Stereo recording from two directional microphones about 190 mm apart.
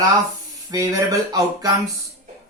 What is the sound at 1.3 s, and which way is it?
Speech, 20° right (ahead or behind).